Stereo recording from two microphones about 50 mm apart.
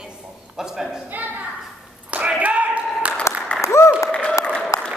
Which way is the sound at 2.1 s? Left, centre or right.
Right.